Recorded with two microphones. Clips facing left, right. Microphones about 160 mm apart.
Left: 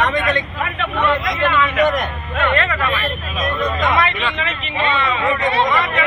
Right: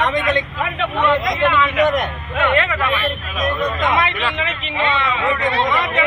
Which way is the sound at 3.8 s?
15° right (ahead or behind).